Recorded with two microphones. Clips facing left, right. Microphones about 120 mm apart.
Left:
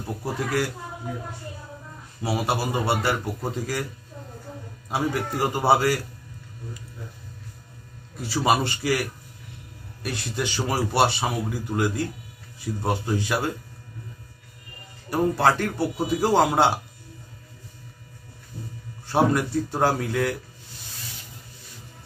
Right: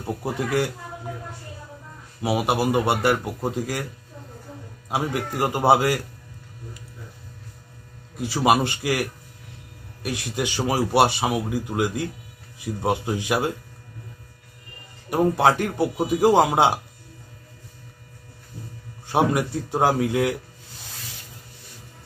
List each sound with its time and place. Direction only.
0.0 s speech: 20° right (ahead or behind)
2.2 s speech: 15° right (ahead or behind)
4.8 s speech: 15° right (ahead or behind)
8.2 s speech: 15° right (ahead or behind)
10.0 s speech: 10° right (ahead or behind)
15.0 s speech: 15° right (ahead or behind)
19.1 s speech: 15° right (ahead or behind)